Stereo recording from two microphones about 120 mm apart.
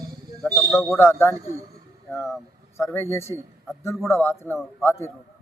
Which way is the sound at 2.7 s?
20° left (ahead or behind).